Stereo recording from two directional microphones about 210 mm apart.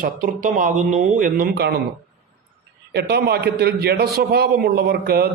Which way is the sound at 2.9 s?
50° right (ahead or behind).